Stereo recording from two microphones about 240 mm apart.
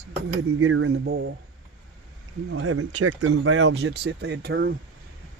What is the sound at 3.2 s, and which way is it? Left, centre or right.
Speech, right.